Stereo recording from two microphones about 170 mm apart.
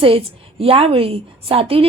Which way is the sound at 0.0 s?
35° right (ahead or behind).